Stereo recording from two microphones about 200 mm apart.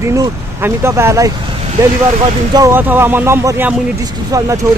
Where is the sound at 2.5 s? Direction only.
15° right (ahead or behind).